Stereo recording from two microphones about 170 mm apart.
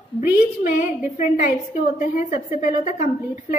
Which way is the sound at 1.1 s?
50° left (ahead or behind).